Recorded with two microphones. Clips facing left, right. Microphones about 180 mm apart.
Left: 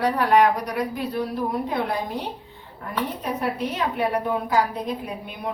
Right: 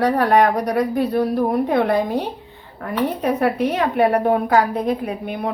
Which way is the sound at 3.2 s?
65° right (ahead or behind).